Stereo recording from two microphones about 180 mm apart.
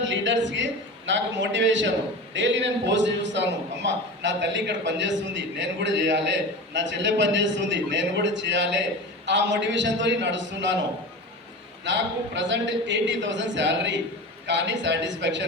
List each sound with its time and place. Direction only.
0.0 s a man's voice: 90° right
11.9 s a man's voice: 85° right